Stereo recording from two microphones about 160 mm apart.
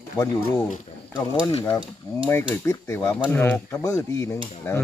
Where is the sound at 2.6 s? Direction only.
15° left (ahead or behind).